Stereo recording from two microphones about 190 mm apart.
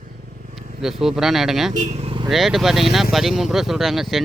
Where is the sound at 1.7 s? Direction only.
40° right (ahead or behind).